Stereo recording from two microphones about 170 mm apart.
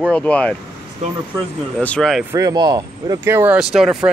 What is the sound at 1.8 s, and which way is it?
Speech, 5° left (ahead or behind).